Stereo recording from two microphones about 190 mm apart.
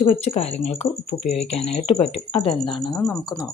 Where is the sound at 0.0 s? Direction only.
30° left (ahead or behind).